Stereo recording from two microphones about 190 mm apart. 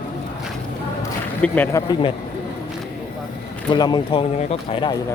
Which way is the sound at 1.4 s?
10° left (ahead or behind).